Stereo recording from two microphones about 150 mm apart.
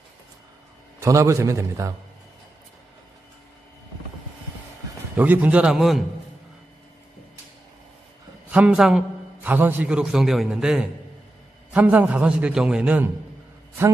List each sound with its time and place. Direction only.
0.9 s a man's voice: 20° right (ahead or behind)
5.1 s a man's voice: 10° right (ahead or behind)
8.5 s a man's voice: 10° right (ahead or behind)